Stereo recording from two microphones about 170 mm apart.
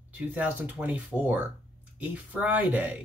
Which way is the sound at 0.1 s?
10° right (ahead or behind).